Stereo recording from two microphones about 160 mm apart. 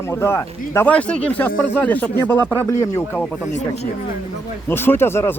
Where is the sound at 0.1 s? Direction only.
15° left (ahead or behind).